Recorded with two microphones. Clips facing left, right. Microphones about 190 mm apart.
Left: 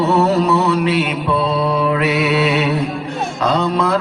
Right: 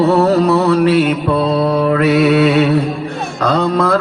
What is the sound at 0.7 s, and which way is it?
Mantra, 45° right (ahead or behind).